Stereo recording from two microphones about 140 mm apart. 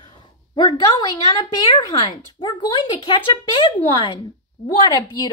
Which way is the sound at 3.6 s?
35° left (ahead or behind).